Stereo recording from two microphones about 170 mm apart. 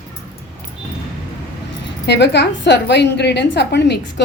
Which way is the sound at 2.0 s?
90° left.